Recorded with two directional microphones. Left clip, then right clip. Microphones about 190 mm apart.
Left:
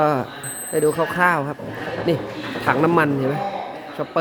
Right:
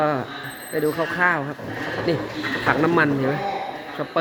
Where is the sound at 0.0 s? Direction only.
20° left (ahead or behind).